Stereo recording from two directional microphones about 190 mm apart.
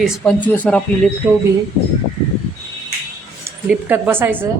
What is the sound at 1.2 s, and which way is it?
Speech, 5° right (ahead or behind).